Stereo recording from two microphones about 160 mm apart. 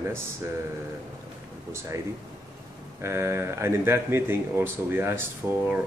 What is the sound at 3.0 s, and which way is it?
Speech, 15° right (ahead or behind).